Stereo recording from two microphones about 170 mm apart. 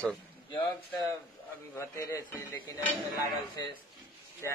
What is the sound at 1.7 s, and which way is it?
Speech, 15° left (ahead or behind).